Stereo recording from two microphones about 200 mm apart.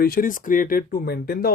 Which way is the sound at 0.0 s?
45° left (ahead or behind).